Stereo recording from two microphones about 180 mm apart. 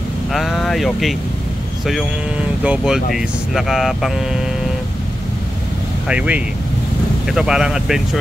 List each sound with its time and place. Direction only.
0.3 s speech: centre (ahead or behind)
2.6 s speech: 5° right (ahead or behind)
6.0 s speech: 5° right (ahead or behind)